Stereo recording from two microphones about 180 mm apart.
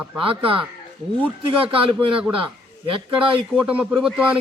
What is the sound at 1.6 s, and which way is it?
A man's voice, 30° right (ahead or behind).